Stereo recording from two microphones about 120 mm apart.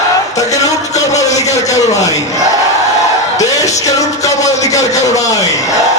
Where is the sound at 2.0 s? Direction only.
30° left (ahead or behind).